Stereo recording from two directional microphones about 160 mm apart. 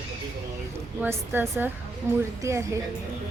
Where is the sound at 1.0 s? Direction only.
15° right (ahead or behind).